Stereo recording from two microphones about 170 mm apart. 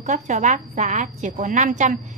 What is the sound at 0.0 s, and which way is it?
A woman's voice, 40° right (ahead or behind).